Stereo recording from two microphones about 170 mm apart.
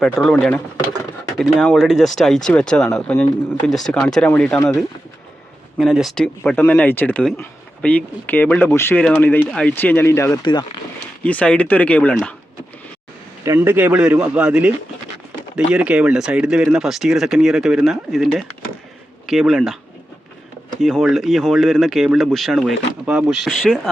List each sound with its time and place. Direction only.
0.0 s speech: 5° left (ahead or behind)
5.7 s speech: 5° right (ahead or behind); by 10.4 s 15° left (ahead or behind)
10.4 s speech: 25° left (ahead or behind)
11.2 s speech: 5° left (ahead or behind)
13.4 s a man's voice: 15° right (ahead or behind)
20.8 s speech: centre (ahead or behind)